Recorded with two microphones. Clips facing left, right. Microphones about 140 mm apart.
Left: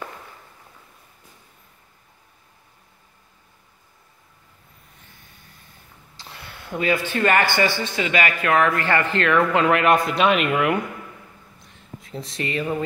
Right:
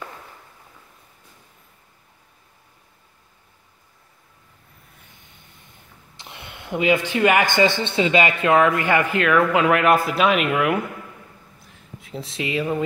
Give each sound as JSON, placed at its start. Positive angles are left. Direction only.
{"t": 5.1, "sound": "vehicle", "side_deg": -20}
{"t": 6.1, "sound": "speech", "side_deg": -20}
{"t": 11.6, "sound": "a sound", "side_deg": 0}